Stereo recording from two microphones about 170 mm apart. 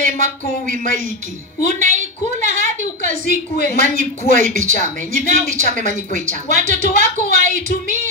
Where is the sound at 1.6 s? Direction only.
50° right (ahead or behind).